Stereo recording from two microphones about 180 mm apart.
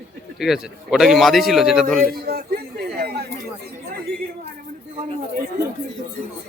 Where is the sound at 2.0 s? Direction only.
55° right (ahead or behind).